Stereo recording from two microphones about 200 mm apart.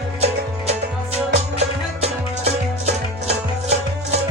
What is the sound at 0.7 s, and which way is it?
Music, 35° right (ahead or behind).